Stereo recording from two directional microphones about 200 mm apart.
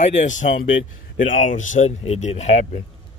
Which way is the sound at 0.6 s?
65° left (ahead or behind).